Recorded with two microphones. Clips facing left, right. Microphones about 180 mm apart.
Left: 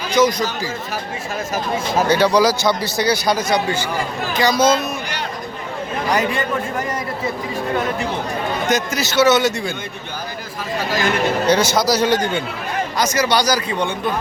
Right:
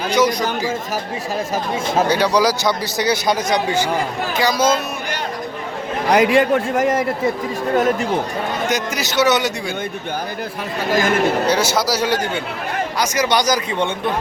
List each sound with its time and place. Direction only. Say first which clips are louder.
0.1 s speech: left 2 dB; 10° right (ahead or behind)
2.0 s a man's voice: left 4 dB; 10° right (ahead or behind)
6.1 s a man's voice: right 9 dB; 80° right
7.8 s speech: right 8 dB; 45° right (ahead or behind)
8.7 s a man's voice: left 4 dB; 15° right (ahead or behind)
10.8 s speech: right 3 dB; 50° right (ahead or behind)
11.4 s a man's voice: left 2 dB; 5° right (ahead or behind); by 13.9 s 25° right (ahead or behind)